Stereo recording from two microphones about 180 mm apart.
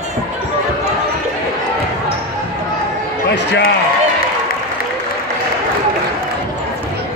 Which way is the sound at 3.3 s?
70° left (ahead or behind).